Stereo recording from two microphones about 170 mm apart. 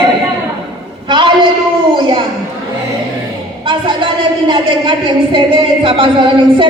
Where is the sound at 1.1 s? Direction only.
30° right (ahead or behind).